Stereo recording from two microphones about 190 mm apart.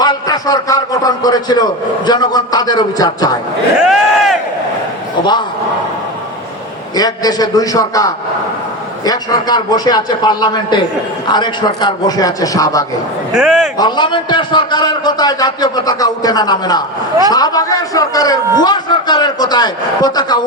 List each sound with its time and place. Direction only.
0.0 s a man's voice: 20° left (ahead or behind)
3.8 s a sound: centre (ahead or behind)
6.9 s a man's voice: 20° left (ahead or behind)
13.3 s a man's voice: centre (ahead or behind)
13.7 s a man's voice: 25° left (ahead or behind)